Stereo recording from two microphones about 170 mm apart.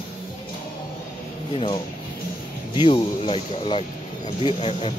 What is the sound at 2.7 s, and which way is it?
Speech, 30° left (ahead or behind).